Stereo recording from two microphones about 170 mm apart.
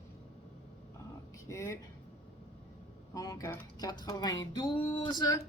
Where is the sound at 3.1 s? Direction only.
20° left (ahead or behind).